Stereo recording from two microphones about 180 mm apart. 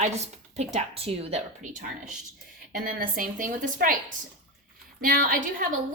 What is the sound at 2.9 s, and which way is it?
A woman's voice, 50° right (ahead or behind).